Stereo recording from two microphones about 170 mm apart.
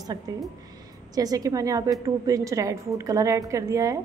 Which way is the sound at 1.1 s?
20° right (ahead or behind).